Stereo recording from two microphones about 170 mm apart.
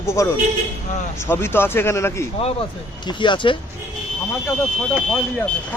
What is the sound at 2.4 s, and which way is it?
Speech, 35° left (ahead or behind).